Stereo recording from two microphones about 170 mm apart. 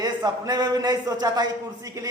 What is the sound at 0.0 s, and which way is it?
Speech, 25° right (ahead or behind).